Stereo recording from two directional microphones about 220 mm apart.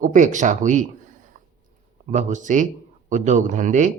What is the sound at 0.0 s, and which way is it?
Speech, 35° right (ahead or behind).